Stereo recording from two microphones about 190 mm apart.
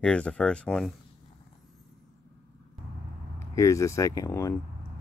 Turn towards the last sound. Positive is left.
turn(degrees=15)  # may be behind; listen again after turning